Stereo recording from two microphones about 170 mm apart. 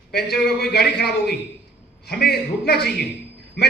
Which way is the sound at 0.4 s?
70° left (ahead or behind).